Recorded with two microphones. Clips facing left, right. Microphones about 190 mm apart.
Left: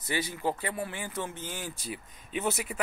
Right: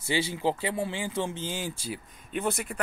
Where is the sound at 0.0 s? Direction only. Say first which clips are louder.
Right 4 dB; 30° right (ahead or behind).